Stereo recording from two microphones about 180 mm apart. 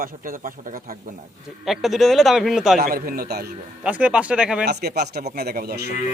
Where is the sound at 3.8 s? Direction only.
10° right (ahead or behind).